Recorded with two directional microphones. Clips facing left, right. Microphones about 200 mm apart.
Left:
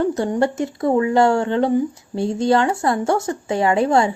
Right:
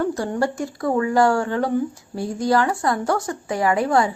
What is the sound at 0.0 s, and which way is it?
A woman's voice, 20° left (ahead or behind).